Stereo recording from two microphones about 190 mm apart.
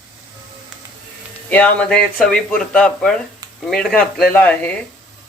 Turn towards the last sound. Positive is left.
turn(degrees=10)  # may be behind; listen again after turning